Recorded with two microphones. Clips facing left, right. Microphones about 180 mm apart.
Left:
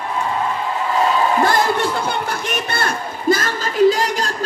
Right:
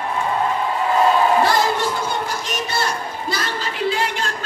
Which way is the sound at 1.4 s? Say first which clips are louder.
Left 1 dB; 55° left (ahead or behind).